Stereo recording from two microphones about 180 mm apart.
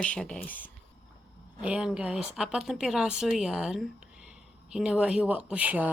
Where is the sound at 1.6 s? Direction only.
5° right (ahead or behind).